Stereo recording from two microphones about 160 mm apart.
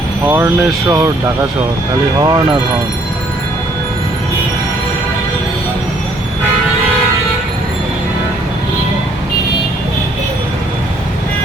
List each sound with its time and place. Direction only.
0.3 s speech: 15° right (ahead or behind)